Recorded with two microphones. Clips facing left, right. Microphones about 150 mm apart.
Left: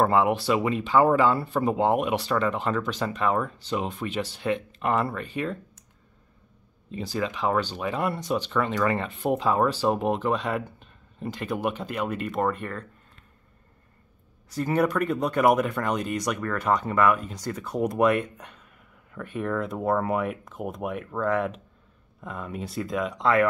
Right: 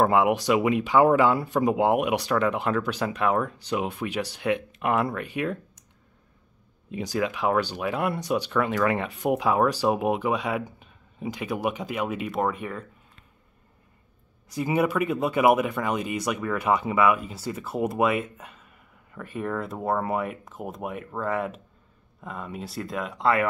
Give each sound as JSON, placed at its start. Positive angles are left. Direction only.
{"t": 0.0, "sound": "speech", "side_deg": -10}
{"t": 6.9, "sound": "speech", "side_deg": -10}
{"t": 14.5, "sound": "speech", "side_deg": -10}